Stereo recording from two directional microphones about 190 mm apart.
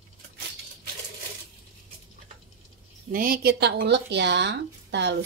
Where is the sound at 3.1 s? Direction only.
50° right (ahead or behind); by 5.1 s 65° right (ahead or behind).